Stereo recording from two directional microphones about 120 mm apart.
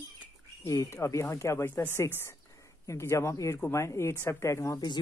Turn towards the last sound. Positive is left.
turn(degrees=35)  # may be behind; listen again after turning